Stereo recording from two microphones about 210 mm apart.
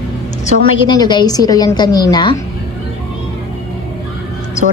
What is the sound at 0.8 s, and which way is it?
A woman's voice, 20° left (ahead or behind).